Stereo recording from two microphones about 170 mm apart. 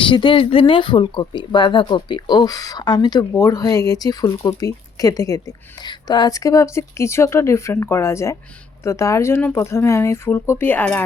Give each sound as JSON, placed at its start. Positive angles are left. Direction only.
{"t": 0.0, "sound": "speech", "side_deg": 30}